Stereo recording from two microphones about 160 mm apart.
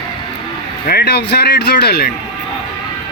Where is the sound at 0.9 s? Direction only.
90° left.